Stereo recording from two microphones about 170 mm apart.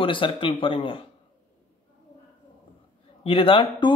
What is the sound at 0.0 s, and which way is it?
Speech, 30° left (ahead or behind).